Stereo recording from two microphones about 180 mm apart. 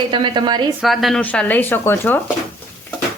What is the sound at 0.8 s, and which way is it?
Speech, centre (ahead or behind).